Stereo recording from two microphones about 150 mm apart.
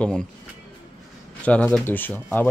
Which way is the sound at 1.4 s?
10° left (ahead or behind).